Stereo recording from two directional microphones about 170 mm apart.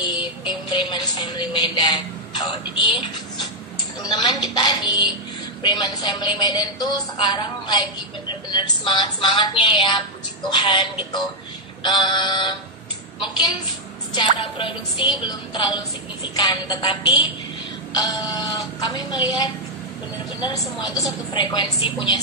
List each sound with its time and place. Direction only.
0.0 s music: 25° left (ahead or behind)
0.7 s a woman's voice: 25° left (ahead or behind)
14.1 s music: 30° left (ahead or behind)
15.2 s a woman's voice: 25° left (ahead or behind)